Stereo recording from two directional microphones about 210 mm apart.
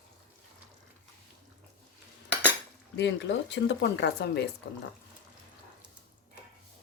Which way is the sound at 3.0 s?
55° left (ahead or behind).